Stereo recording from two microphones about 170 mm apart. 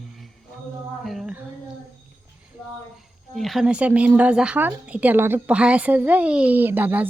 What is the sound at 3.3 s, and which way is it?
A woman's voice, centre (ahead or behind).